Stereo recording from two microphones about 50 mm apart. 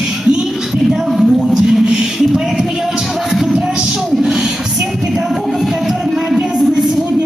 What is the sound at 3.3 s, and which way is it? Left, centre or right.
Music, centre.